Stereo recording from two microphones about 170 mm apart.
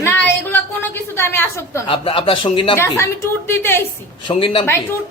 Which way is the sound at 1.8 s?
30° left (ahead or behind).